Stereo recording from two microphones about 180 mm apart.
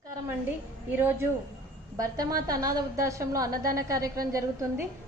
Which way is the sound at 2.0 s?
20° right (ahead or behind).